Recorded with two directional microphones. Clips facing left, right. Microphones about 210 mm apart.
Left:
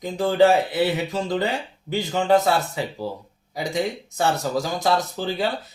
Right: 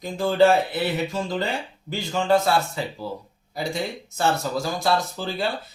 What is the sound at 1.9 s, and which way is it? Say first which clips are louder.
Speech: left 2 dB; 20° left (ahead or behind).